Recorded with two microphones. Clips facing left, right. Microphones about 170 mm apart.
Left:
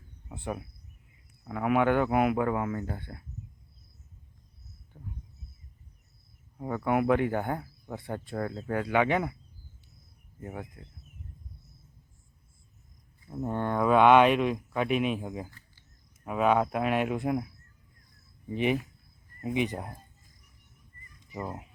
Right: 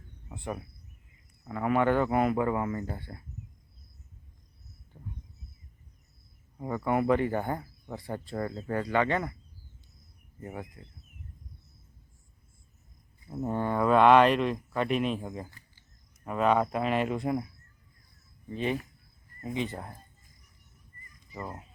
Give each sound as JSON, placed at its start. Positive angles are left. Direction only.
{"t": 0.3, "sound": "speech", "side_deg": 5}
{"t": 4.9, "sound": "a sound", "side_deg": -5}
{"t": 6.6, "sound": "speech", "side_deg": 0}
{"t": 10.4, "sound": "speech", "side_deg": 0}
{"t": 13.3, "sound": "speech", "side_deg": -5}
{"t": 18.4, "sound": "speech", "side_deg": 15}